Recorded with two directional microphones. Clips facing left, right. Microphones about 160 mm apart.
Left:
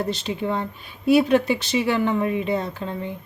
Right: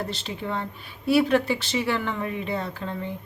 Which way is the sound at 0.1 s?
20° left (ahead or behind).